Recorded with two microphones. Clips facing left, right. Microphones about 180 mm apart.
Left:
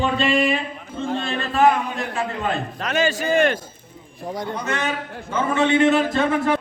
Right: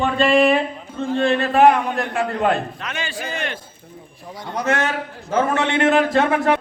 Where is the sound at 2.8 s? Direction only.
40° left (ahead or behind).